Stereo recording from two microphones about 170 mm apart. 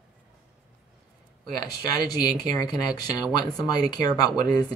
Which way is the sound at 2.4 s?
25° left (ahead or behind).